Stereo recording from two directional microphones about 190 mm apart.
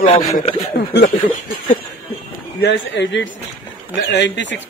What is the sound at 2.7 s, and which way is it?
A woman's voice, 70° left (ahead or behind).